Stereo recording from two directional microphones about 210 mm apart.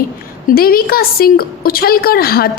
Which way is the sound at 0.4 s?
45° left (ahead or behind).